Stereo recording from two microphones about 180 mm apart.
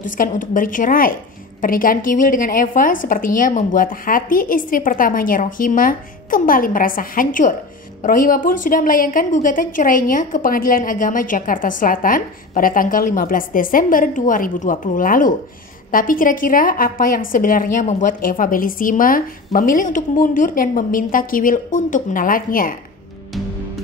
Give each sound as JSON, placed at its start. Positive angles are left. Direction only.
{"t": 0.0, "sound": "a woman's voice", "side_deg": 50}
{"t": 23.3, "sound": "music", "side_deg": 0}